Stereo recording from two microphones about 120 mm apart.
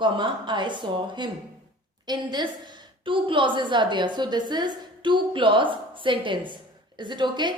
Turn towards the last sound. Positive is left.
turn(degrees=-40)  # may be behind; listen again after turning